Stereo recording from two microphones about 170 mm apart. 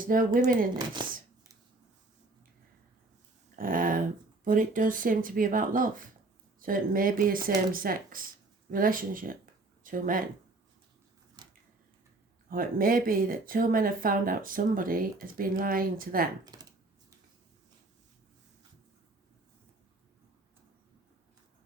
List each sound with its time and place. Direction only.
0.0 s speech: 55° right (ahead or behind)
1.0 s speech: 30° right (ahead or behind)
3.5 s a sound: 55° right (ahead or behind)
4.4 s speech: 50° right (ahead or behind)
11.4 s a sound: 25° right (ahead or behind)
12.5 s speech: 55° right (ahead or behind)
16.4 s speech: 25° right (ahead or behind)